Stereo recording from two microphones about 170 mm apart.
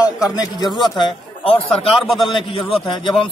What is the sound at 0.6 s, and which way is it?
A man's voice, 25° left (ahead or behind).